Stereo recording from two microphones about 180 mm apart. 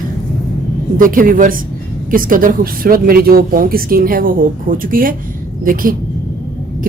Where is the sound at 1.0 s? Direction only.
50° right (ahead or behind).